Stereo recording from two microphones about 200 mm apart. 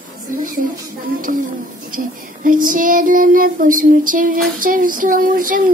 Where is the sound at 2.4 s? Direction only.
40° right (ahead or behind).